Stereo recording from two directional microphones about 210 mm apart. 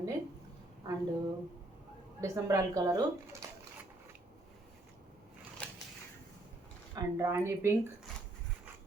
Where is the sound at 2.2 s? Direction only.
15° right (ahead or behind).